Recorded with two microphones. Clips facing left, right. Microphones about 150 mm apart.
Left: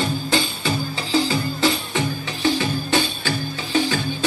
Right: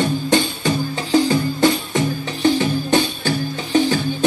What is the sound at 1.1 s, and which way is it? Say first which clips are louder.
Music: right 5 dB; 50° right (ahead or behind).